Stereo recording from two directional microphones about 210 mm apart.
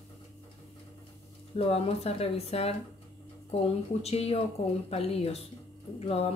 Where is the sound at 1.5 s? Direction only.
30° left (ahead or behind).